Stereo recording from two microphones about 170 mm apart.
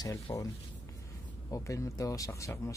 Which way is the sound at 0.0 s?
20° left (ahead or behind).